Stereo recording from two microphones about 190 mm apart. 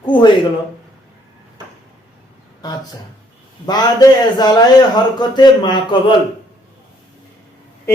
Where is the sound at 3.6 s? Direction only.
20° left (ahead or behind).